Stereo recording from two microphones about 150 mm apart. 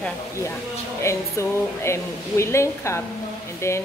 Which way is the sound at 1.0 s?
20° left (ahead or behind).